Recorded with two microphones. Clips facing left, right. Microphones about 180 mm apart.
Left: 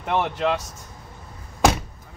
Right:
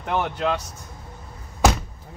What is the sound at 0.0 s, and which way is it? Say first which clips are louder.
Speech: left 1 dB; 5° left (ahead or behind).